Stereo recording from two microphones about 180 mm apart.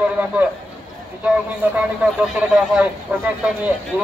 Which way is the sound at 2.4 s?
10° right (ahead or behind).